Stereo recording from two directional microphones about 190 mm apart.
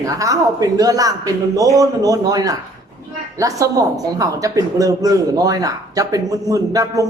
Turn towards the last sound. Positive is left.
turn(degrees=-20)  # may be behind; listen again after turning